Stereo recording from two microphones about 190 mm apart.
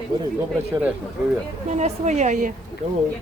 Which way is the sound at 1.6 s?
35° right (ahead or behind).